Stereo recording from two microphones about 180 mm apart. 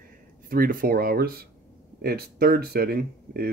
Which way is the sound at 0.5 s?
50° right (ahead or behind).